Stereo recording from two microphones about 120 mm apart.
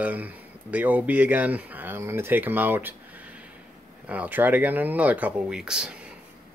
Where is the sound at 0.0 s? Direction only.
15° right (ahead or behind).